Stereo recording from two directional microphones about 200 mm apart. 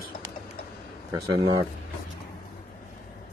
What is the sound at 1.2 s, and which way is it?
Speech, 20° right (ahead or behind).